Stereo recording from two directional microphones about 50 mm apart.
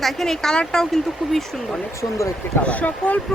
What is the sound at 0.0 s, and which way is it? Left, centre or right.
Speech, centre.